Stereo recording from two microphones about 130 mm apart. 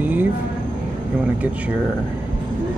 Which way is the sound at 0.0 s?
15° right (ahead or behind).